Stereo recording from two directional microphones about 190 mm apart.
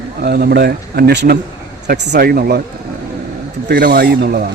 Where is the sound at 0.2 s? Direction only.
55° right (ahead or behind).